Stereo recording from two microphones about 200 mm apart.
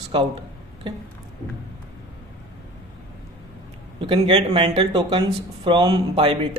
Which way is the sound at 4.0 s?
30° right (ahead or behind).